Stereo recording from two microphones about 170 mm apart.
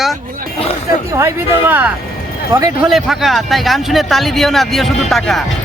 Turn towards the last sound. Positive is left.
turn(degrees=0)  # may be behind; listen again after turning